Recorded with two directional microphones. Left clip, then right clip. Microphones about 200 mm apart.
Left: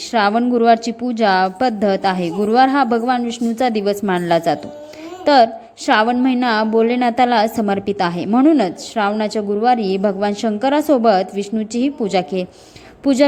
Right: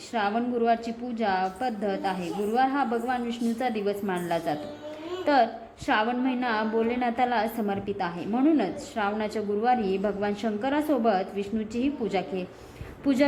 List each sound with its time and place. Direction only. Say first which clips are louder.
0.1 s a woman's voice: left 12 dB; 35° left (ahead or behind)